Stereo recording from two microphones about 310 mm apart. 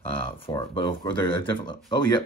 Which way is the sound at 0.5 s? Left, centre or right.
Centre.